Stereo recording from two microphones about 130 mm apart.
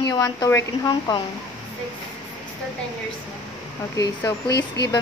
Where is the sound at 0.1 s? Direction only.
25° left (ahead or behind).